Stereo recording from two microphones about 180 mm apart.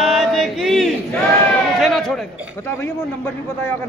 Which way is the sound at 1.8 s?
Centre (ahead or behind).